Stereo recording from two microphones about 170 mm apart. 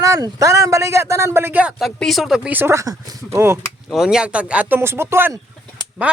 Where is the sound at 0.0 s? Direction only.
20° right (ahead or behind).